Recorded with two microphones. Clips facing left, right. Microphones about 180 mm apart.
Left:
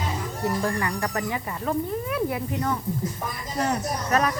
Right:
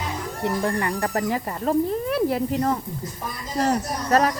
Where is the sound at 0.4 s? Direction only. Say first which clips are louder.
Right 2 dB; 25° right (ahead or behind).